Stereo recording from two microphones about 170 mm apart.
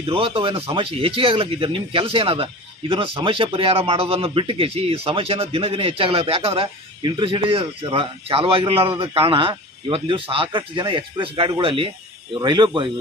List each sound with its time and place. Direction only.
0.0 s speech: 30° right (ahead or behind)